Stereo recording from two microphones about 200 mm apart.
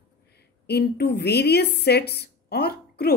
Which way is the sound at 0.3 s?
55° left (ahead or behind).